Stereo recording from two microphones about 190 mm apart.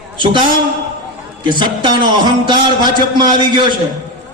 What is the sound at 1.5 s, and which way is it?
A man's voice, 25° right (ahead or behind).